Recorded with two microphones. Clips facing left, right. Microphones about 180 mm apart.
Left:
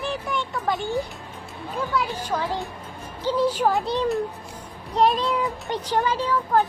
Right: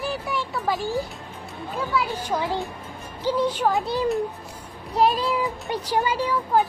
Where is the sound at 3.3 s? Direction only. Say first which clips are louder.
Left 2 dB; 10° left (ahead or behind); by 6.6 s 10° right (ahead or behind).